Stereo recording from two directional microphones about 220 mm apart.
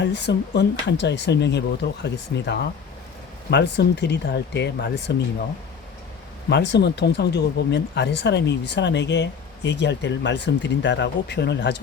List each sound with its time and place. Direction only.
0.0 s speech: 50° left (ahead or behind)
6.5 s speech: 50° left (ahead or behind)